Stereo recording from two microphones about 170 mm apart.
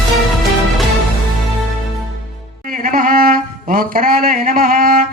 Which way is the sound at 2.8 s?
55° right (ahead or behind).